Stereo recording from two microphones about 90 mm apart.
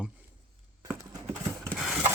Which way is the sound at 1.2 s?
35° right (ahead or behind).